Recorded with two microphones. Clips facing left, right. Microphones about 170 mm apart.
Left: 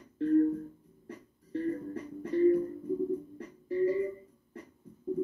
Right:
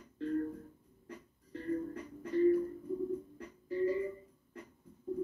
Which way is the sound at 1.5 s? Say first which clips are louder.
Left 4 dB; 30° left (ahead or behind).